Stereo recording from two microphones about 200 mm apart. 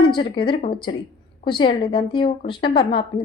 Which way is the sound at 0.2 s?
25° left (ahead or behind).